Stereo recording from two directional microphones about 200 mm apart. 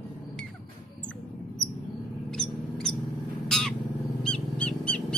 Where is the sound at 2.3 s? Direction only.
5° left (ahead or behind).